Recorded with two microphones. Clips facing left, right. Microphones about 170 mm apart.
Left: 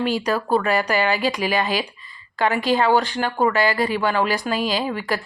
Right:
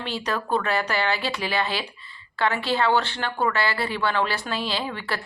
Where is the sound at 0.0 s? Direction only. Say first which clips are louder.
Left 7 dB; 10° left (ahead or behind).